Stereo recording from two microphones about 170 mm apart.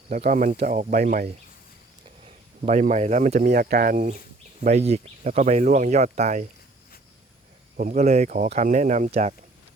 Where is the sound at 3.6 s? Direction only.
60° right (ahead or behind).